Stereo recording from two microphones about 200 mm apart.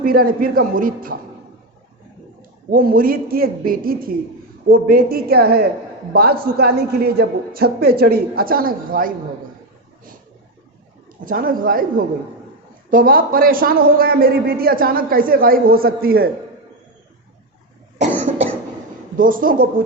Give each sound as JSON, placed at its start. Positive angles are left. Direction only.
{"t": 0.0, "sound": "a man's voice", "side_deg": -45}
{"t": 2.6, "sound": "a man's voice", "side_deg": -45}
{"t": 11.3, "sound": "a man's voice", "side_deg": -45}
{"t": 19.1, "sound": "a man's voice", "side_deg": -45}